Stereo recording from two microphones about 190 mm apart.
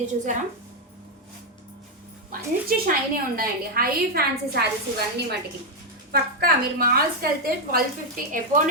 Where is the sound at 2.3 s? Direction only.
50° right (ahead or behind).